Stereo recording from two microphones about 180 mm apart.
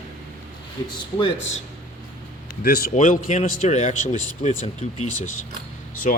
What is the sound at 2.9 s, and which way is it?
A man's voice, 45° left (ahead or behind).